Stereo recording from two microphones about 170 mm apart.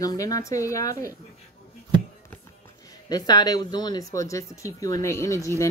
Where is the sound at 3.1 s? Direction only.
25° left (ahead or behind).